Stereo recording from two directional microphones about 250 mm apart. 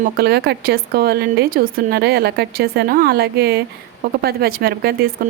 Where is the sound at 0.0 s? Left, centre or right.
Right.